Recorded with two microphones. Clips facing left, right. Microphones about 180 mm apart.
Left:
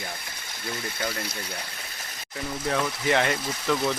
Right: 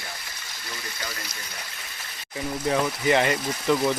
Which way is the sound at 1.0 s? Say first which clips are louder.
Left 7 dB; 55° left (ahead or behind).